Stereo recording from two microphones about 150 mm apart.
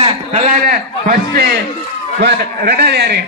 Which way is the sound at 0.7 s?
90° right.